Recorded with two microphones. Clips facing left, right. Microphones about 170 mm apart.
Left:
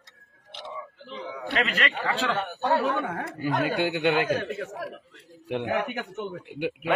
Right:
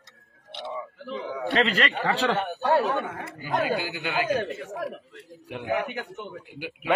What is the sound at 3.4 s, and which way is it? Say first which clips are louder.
Speech: left 1 dB; 70° left (ahead or behind).